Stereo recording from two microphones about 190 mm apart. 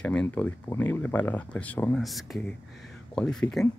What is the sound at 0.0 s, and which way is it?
Speech, 5° left (ahead or behind).